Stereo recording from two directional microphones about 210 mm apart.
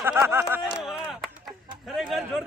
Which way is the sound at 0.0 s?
10° right (ahead or behind).